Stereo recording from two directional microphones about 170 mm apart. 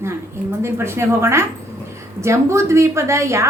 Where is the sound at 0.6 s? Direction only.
15° right (ahead or behind).